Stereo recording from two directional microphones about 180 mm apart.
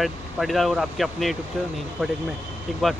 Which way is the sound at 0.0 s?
Centre (ahead or behind).